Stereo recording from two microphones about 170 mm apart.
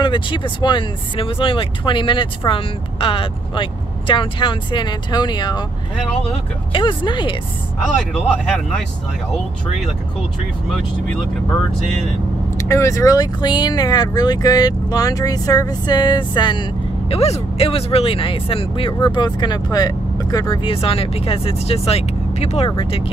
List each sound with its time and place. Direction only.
0.0 s speech: 30° left (ahead or behind)
6.7 s speech: 30° left (ahead or behind)
12.5 s speech: 15° left (ahead or behind); by 23.1 s 30° left (ahead or behind)